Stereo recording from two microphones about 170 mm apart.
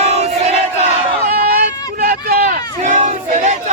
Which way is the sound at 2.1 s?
55° right (ahead or behind).